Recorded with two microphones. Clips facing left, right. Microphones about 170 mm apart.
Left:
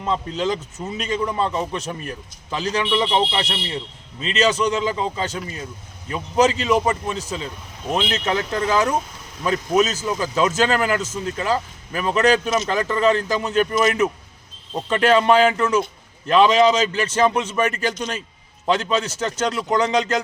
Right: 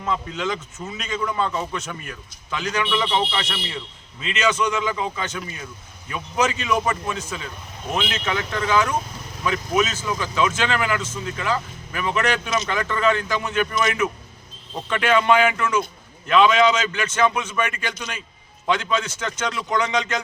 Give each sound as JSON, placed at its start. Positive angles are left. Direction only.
{"t": 0.0, "sound": "a man's voice", "side_deg": 30}